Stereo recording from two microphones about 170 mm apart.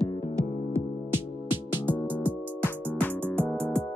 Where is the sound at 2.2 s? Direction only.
10° left (ahead or behind).